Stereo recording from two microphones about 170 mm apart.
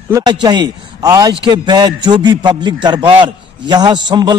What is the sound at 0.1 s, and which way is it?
A man's voice, 25° right (ahead or behind).